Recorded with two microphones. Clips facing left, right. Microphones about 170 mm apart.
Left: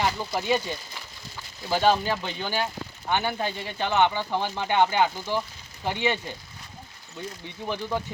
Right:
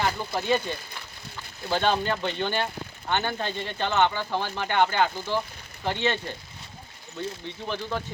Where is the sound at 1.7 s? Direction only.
5° left (ahead or behind).